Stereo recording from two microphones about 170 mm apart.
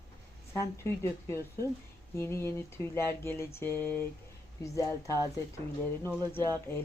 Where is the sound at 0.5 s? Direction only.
15° left (ahead or behind).